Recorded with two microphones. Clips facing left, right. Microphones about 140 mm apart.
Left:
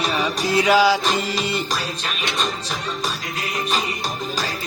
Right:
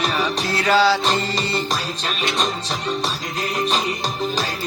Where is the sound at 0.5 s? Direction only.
10° left (ahead or behind).